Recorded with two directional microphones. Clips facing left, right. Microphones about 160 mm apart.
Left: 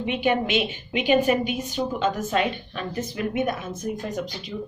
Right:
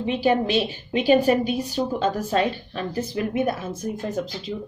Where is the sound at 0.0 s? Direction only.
35° right (ahead or behind).